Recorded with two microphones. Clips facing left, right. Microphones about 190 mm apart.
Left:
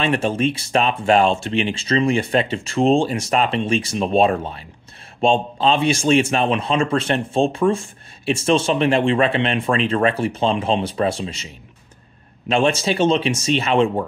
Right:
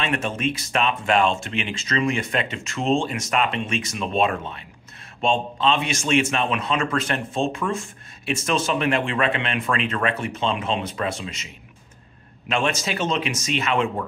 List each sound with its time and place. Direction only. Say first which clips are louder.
0.0 s a man's voice: left 6 dB; 30° left (ahead or behind)